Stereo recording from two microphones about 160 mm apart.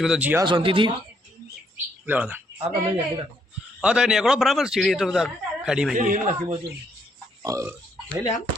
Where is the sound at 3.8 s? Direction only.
5° right (ahead or behind).